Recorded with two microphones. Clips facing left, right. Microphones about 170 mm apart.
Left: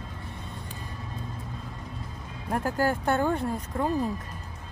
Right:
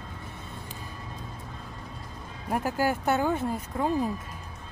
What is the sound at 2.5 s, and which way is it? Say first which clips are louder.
Speech: even; 15° right (ahead or behind).